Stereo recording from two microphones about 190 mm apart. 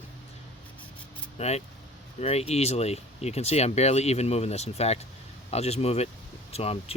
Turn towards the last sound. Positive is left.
turn(degrees=30)  # may be behind; listen again after turning